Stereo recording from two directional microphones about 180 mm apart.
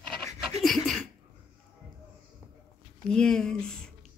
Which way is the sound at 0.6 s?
Centre (ahead or behind).